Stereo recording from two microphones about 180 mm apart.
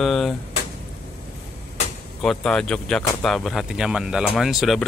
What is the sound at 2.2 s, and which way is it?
Speech, 5° left (ahead or behind).